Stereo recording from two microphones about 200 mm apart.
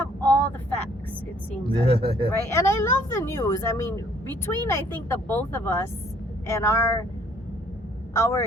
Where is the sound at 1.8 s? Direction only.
30° left (ahead or behind).